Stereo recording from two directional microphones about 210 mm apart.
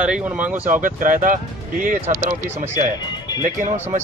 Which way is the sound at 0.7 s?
40° right (ahead or behind).